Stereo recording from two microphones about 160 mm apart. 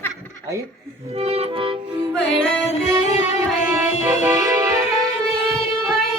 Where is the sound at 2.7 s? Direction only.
45° left (ahead or behind).